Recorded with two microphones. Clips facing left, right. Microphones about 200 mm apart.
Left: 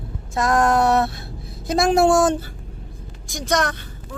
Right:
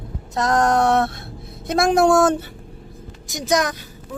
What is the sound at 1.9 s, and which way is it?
Speech, centre (ahead or behind).